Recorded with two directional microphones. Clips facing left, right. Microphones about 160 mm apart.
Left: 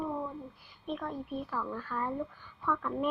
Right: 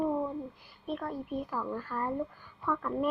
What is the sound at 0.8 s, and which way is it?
Speech, 5° right (ahead or behind).